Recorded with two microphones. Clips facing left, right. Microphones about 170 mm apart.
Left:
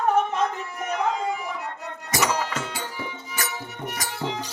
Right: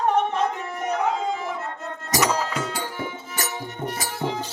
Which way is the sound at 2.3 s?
5° right (ahead or behind).